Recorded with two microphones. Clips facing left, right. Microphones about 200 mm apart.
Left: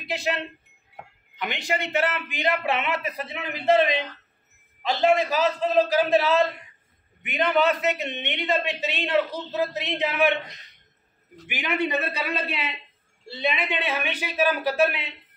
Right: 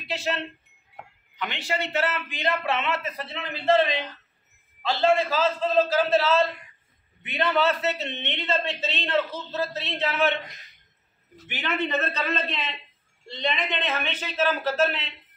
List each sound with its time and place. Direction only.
0.1 s a man's voice: 15° left (ahead or behind)
1.4 s a man's voice: 15° left (ahead or behind)
10.5 s speech: centre (ahead or behind)
11.4 s a man's voice: 15° left (ahead or behind)